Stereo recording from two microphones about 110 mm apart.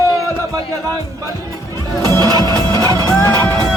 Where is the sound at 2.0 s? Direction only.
40° right (ahead or behind).